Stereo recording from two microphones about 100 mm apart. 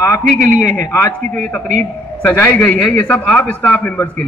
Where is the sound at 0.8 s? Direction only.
35° left (ahead or behind).